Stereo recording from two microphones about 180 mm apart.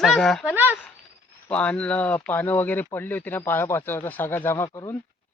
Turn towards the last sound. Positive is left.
turn(degrees=15)  # may be behind; listen again after turning